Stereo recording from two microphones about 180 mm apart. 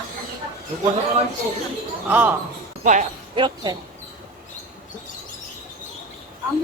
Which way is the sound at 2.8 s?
45° right (ahead or behind).